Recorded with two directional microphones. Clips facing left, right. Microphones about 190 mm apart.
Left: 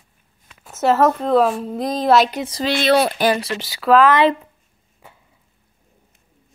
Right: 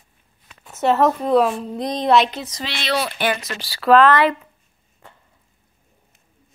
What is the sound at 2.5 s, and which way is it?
Speech, 35° left (ahead or behind).